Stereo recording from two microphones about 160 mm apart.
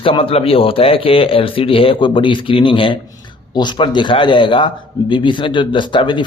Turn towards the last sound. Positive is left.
turn(degrees=30)  # may be behind; listen again after turning